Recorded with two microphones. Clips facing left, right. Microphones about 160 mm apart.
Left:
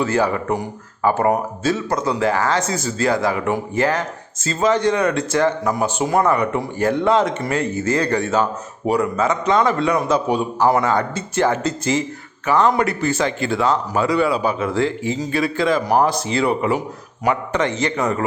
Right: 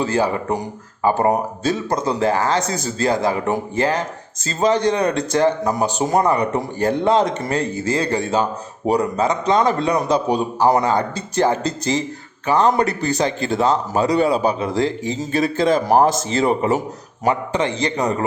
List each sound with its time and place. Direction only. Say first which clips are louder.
0.0 s a man's voice: even; 30° right (ahead or behind)
17.2 s a man's voice: even; 30° right (ahead or behind)